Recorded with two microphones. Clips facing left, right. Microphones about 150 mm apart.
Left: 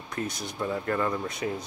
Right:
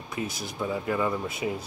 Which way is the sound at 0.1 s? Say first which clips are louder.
Even; 5° right (ahead or behind).